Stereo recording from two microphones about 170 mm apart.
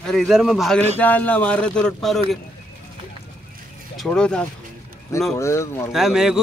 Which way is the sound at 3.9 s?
5° left (ahead or behind).